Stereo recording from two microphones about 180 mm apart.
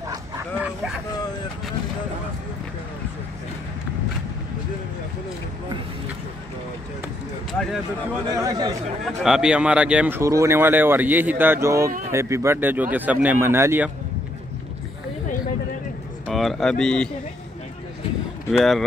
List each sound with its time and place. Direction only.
0.6 s speech: 5° right (ahead or behind)
8.3 s speech: 20° right (ahead or behind)
9.0 s speech: centre (ahead or behind)
16.3 s speech: centre (ahead or behind)
18.5 s speech: centre (ahead or behind)